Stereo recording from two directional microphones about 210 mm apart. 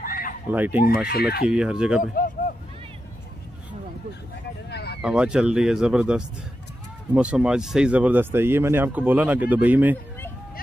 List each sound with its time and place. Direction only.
0.0 s fowl: 45° left (ahead or behind)
0.5 s speech: 10° right (ahead or behind)
0.8 s speech: 45° left (ahead or behind)
1.5 s speech: 5° right (ahead or behind)
2.1 s a sound: 40° left (ahead or behind)
4.6 s a sound: 50° left (ahead or behind)
5.0 s speech: 5° right (ahead or behind)